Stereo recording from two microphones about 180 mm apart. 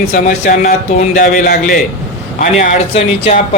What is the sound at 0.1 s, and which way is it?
A man's voice, 45° left (ahead or behind).